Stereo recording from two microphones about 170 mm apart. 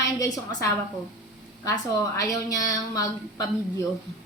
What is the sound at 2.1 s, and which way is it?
A woman's voice, 20° left (ahead or behind).